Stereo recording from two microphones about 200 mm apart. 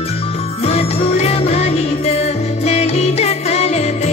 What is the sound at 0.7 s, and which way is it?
Music, 30° left (ahead or behind).